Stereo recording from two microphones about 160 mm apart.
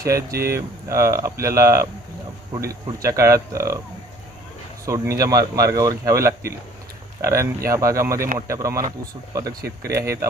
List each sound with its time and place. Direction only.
0.5 s speech: 20° right (ahead or behind)
4.8 s speech: 20° right (ahead or behind)